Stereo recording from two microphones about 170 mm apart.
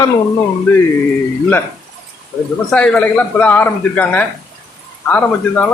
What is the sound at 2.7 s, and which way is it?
A man's voice, 5° left (ahead or behind).